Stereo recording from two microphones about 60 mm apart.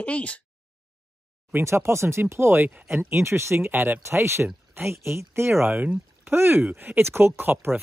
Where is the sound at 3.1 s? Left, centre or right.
Right.